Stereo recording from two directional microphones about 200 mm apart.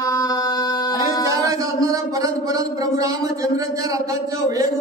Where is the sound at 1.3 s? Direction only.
15° right (ahead or behind).